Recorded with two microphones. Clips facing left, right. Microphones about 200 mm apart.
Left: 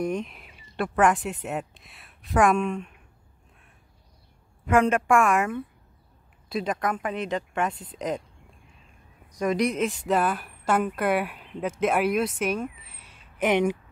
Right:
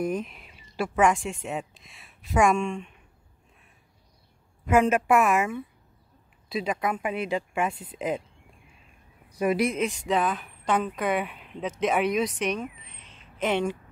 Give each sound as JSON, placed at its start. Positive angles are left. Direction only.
{"t": 0.0, "sound": "speech", "side_deg": 0}
{"t": 4.6, "sound": "a woman's voice", "side_deg": -5}
{"t": 9.3, "sound": "a woman's voice", "side_deg": -10}